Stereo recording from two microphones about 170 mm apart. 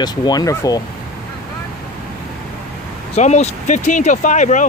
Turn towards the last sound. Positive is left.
turn(degrees=45)  # may be behind; listen again after turning